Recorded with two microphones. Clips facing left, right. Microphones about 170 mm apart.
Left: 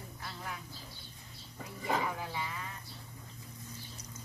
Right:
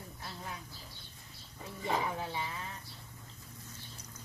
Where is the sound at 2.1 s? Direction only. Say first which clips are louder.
Right 1 dB; 30° right (ahead or behind).